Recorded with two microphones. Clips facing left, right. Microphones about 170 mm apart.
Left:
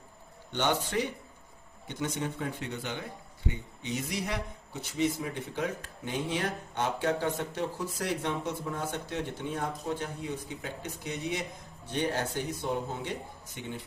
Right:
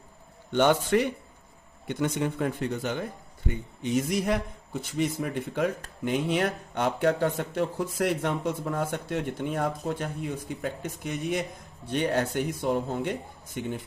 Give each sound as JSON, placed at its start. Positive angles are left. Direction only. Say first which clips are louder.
{"t": 0.5, "sound": "speech", "louder": "right 7 dB", "side_deg": -50}
{"t": 11.9, "sound": "speech", "louder": "right 5 dB", "side_deg": -65}